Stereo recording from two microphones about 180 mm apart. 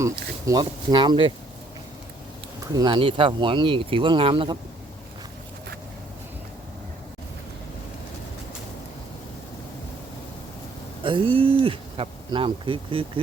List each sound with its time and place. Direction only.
0.0 s speech: 20° right (ahead or behind)
2.7 s speech: 25° right (ahead or behind)
11.0 s speech: 30° right (ahead or behind)